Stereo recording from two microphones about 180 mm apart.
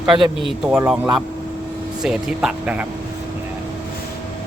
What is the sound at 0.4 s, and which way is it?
Speech, 5° right (ahead or behind).